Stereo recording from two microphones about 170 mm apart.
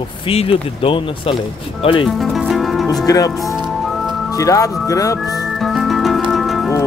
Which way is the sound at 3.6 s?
Centre (ahead or behind).